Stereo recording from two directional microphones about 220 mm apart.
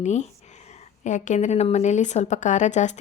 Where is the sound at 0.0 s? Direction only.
30° left (ahead or behind).